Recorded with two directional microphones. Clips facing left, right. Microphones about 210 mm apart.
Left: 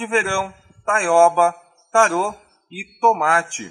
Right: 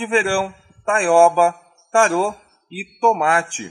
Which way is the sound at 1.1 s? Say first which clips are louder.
Right 1 dB; 10° right (ahead or behind).